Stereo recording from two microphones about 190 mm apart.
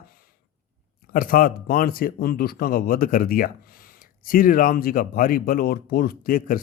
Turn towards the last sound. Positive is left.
turn(degrees=45)  # may be behind; listen again after turning